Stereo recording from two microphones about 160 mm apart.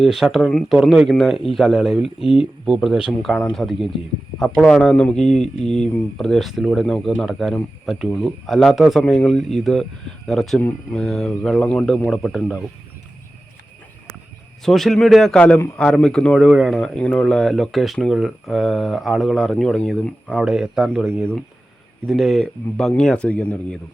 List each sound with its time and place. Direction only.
0.0 s speech: centre (ahead or behind)
2.2 s speech: 40° left (ahead or behind)
2.6 s speech: 5° right (ahead or behind)
14.6 s speech: centre (ahead or behind)
20.3 s speech: 5° right (ahead or behind)